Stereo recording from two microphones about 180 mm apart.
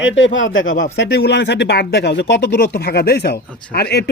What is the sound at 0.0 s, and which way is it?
Speech, 90° left.